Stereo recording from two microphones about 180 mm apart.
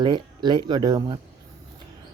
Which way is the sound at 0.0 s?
25° right (ahead or behind).